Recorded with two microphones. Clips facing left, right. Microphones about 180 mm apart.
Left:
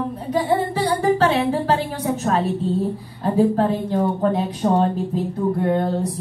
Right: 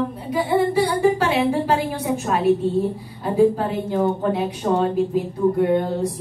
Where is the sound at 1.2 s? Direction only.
10° right (ahead or behind).